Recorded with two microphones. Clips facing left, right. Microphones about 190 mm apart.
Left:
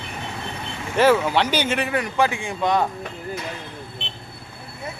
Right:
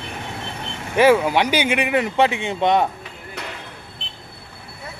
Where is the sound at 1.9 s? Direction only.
25° right (ahead or behind).